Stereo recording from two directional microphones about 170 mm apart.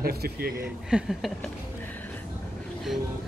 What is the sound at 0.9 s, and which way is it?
Speech, centre (ahead or behind).